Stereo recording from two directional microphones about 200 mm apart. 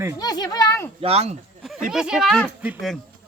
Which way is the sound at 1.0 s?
30° right (ahead or behind).